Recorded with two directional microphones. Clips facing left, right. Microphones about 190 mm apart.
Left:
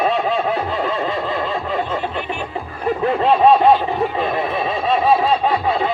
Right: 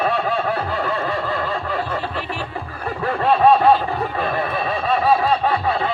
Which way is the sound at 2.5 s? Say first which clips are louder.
Left 6 dB; 20° left (ahead or behind).